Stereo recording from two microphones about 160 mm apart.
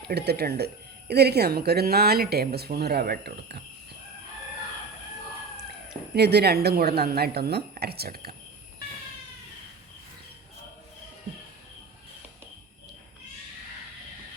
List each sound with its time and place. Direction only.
0.1 s speech: 90° right
6.1 s speech: 90° right; by 8.3 s 75° right (ahead or behind)